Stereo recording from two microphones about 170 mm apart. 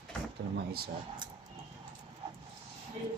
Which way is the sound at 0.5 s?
65° right (ahead or behind).